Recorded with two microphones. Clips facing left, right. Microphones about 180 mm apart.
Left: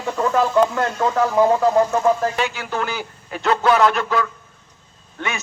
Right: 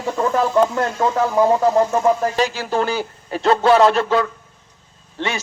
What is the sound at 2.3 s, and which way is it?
A man's voice, 35° right (ahead or behind).